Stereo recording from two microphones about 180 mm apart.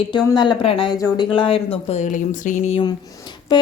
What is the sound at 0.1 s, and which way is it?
Speech, 25° left (ahead or behind).